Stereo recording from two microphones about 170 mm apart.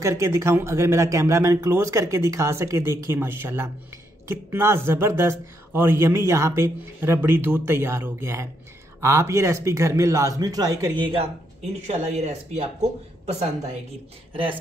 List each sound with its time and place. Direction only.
0.0 s a woman's voice: 20° right (ahead or behind); by 13.5 s 40° right (ahead or behind)